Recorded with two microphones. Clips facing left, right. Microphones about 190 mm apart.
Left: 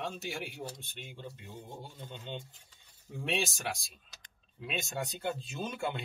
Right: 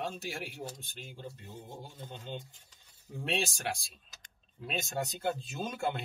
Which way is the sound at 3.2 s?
Centre (ahead or behind).